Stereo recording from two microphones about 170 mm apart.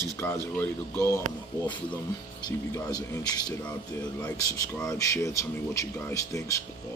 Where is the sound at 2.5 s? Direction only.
20° left (ahead or behind).